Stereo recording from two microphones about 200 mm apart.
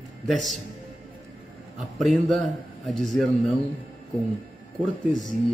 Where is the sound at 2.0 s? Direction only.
Centre (ahead or behind).